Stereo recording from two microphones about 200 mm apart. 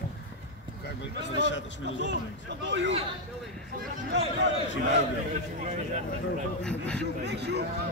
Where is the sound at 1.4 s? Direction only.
65° left (ahead or behind).